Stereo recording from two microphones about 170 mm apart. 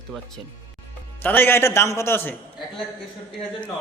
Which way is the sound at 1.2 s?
10° left (ahead or behind).